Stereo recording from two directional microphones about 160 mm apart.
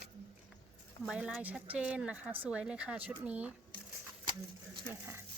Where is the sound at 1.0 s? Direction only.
5° right (ahead or behind).